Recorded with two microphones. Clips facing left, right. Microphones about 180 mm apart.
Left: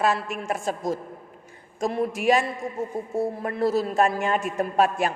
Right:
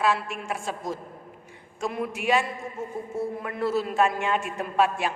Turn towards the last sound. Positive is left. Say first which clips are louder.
# left 2 dB
turn(degrees=40)  # may be behind; listen again after turning